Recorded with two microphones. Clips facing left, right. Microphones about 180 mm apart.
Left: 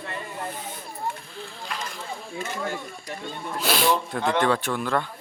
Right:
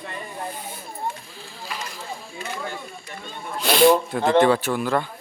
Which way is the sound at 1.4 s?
5° right (ahead or behind).